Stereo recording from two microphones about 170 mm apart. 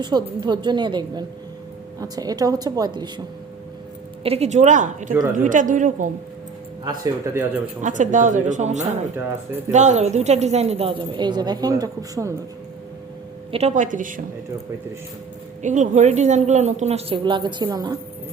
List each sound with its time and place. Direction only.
0.0 s a woman's voice: 25° right (ahead or behind)
4.2 s a woman's voice: 35° right (ahead or behind)
6.8 s a woman's voice: 20° right (ahead or behind)
7.8 s a woman's voice: 45° right (ahead or behind); by 12.3 s 20° right (ahead or behind)
13.5 s a woman's voice: 40° right (ahead or behind)
15.6 s a woman's voice: 45° right (ahead or behind)
17.2 s a woman's voice: 30° right (ahead or behind)